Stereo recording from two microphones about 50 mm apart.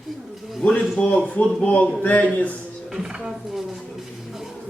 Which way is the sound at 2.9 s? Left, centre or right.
Centre.